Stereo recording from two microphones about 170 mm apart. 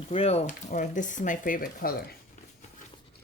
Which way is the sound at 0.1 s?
35° left (ahead or behind).